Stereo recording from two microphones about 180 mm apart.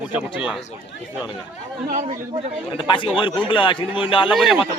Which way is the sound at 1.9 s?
45° right (ahead or behind).